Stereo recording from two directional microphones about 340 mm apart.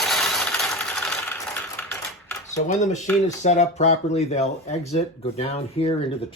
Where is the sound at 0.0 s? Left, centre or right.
Centre.